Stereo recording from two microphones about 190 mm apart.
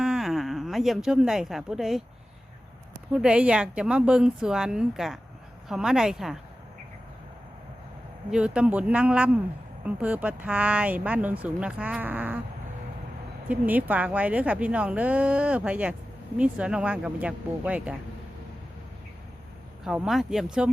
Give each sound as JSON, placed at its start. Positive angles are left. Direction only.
{"t": 0.0, "sound": "speech", "side_deg": 0}
{"t": 3.1, "sound": "a woman's voice", "side_deg": -5}
{"t": 8.3, "sound": "speech", "side_deg": -5}
{"t": 13.5, "sound": "speech", "side_deg": -10}
{"t": 19.8, "sound": "a woman's voice", "side_deg": -5}